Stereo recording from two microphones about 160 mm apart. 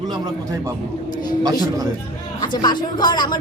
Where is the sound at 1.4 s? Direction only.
20° right (ahead or behind).